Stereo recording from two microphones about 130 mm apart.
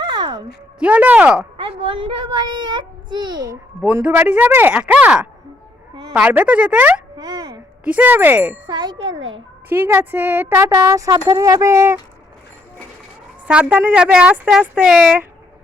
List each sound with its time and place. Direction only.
0.0 s a sound: 35° right (ahead or behind)
0.8 s speech: 15° right (ahead or behind)
1.5 s a child's voice: 40° right (ahead or behind)
3.9 s speech: 20° right (ahead or behind)
7.2 s a child's voice: 30° right (ahead or behind)
7.9 s speech: 15° right (ahead or behind)
8.7 s a child's voice: 35° right (ahead or behind)
9.6 s speech: 15° right (ahead or behind)
13.5 s speech: 10° right (ahead or behind)